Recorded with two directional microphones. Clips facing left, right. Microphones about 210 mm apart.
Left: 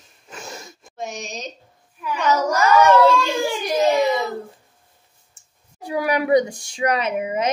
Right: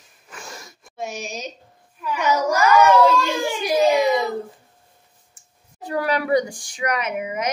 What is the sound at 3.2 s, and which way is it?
Baby cry, 10° right (ahead or behind).